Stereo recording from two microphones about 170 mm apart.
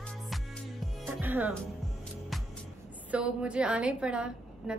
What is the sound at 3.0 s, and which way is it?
A woman's voice, 5° right (ahead or behind).